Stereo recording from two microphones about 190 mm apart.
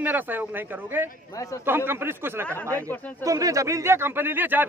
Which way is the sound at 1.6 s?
10° right (ahead or behind).